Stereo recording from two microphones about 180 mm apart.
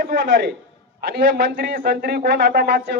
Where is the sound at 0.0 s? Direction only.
60° right (ahead or behind).